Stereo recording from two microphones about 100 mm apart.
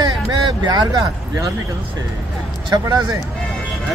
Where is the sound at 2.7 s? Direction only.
35° right (ahead or behind).